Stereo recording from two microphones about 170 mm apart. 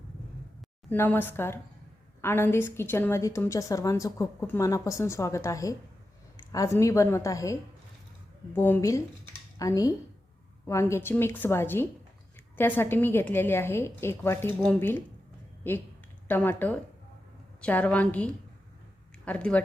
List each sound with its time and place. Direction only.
0.9 s a woman's voice: 10° left (ahead or behind)
8.5 s a woman's voice: 15° left (ahead or behind)
16.3 s a woman's voice: 10° left (ahead or behind)